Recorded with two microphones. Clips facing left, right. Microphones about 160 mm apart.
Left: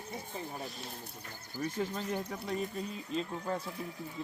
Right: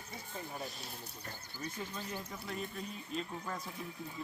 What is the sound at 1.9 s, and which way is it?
Speech, 60° left (ahead or behind).